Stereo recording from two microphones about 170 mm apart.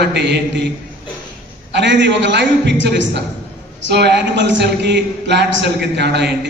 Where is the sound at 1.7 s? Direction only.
90° right.